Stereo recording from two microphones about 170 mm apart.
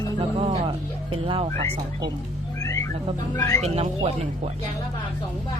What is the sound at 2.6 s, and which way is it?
Cat, 20° left (ahead or behind).